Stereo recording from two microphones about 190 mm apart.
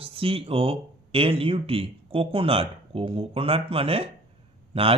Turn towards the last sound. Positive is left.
turn(degrees=-30)  # may be behind; listen again after turning